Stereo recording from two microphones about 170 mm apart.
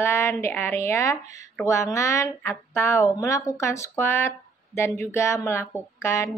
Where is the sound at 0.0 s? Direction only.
15° left (ahead or behind).